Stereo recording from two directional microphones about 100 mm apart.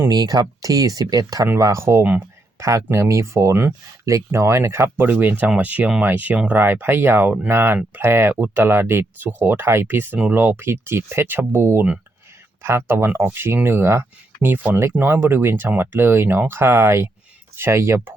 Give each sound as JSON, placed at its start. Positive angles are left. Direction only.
{"t": 0.1, "sound": "speech", "side_deg": -40}